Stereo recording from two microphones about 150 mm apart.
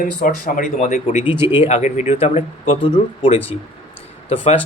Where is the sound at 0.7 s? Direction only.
50° left (ahead or behind).